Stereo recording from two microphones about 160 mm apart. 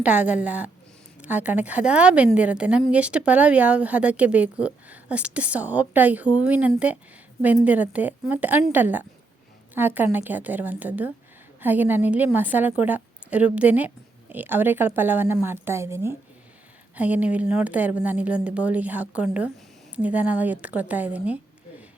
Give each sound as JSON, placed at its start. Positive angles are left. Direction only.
{"t": 0.0, "sound": "a woman's voice", "side_deg": -10}